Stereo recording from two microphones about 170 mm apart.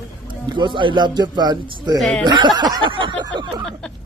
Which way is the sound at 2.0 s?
5° left (ahead or behind).